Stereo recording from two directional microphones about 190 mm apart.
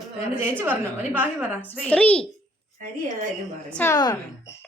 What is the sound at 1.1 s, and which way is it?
Speech, 10° right (ahead or behind).